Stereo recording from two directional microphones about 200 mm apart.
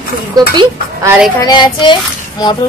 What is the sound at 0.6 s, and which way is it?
Speech, 15° right (ahead or behind).